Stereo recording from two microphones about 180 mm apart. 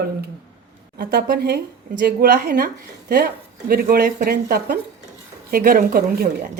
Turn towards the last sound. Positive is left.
turn(degrees=-55)  # may be behind; listen again after turning